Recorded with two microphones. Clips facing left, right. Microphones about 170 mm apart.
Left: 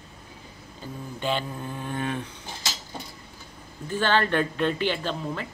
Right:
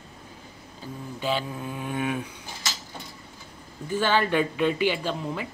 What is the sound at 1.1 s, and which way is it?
Speech, 5° right (ahead or behind).